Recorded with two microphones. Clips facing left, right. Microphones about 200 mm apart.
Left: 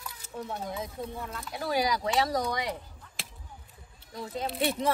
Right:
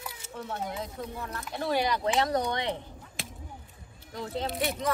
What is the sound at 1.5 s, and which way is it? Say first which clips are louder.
Speech: right 1 dB; 5° left (ahead or behind).